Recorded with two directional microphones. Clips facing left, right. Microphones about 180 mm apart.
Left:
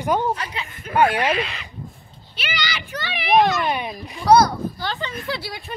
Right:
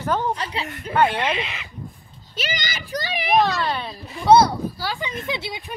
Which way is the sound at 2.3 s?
45° right (ahead or behind).